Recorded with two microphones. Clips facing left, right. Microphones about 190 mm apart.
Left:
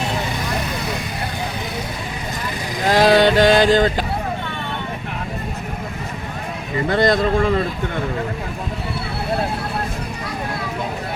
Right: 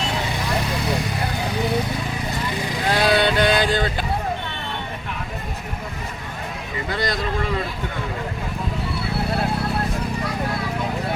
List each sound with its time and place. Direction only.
2.9 s mantra: 45° left (ahead or behind)
6.9 s a man's voice: 50° left (ahead or behind)